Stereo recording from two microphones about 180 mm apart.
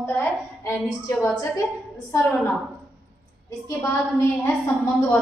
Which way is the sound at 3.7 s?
15° left (ahead or behind).